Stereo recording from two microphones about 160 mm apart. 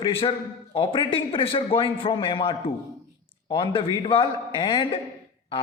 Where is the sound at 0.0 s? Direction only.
35° left (ahead or behind).